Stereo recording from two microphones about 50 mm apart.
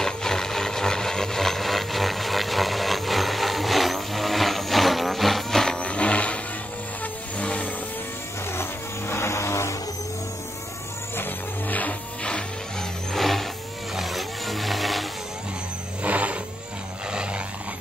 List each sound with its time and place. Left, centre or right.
0.0 s vehicle: centre
5.8 s a sound: left
7.3 s vehicle: left
8.5 s vehicle: left
11.1 s vehicle: left
12.2 s music: centre
13.1 s vehicle: centre
16.0 s vehicle: right